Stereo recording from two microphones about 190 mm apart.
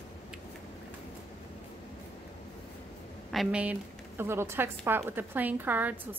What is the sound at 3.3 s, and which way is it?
A woman's voice, 5° right (ahead or behind).